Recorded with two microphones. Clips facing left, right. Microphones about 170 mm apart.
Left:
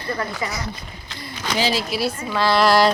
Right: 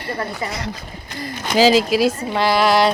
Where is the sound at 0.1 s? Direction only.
30° right (ahead or behind).